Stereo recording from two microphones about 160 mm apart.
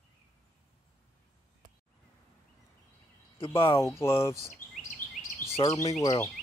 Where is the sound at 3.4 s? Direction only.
35° left (ahead or behind).